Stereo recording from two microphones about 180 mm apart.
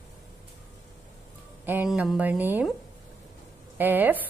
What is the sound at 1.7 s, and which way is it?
A woman's voice, 10° right (ahead or behind).